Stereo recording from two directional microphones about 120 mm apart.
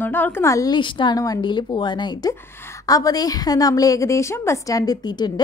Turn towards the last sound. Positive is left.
turn(degrees=35)  # may be behind; listen again after turning